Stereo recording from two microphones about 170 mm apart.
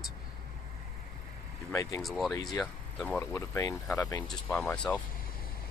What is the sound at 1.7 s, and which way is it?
Speech, 20° left (ahead or behind).